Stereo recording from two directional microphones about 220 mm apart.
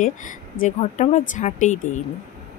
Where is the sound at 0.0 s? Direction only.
35° left (ahead or behind).